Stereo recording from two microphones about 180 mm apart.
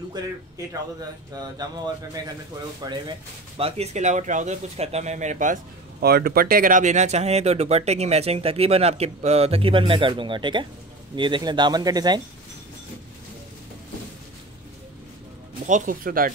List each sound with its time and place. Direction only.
2.8 s speech: 25° right (ahead or behind)
15.6 s speech: 45° right (ahead or behind)